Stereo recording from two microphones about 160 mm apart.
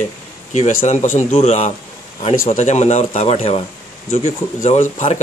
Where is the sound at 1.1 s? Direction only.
40° left (ahead or behind).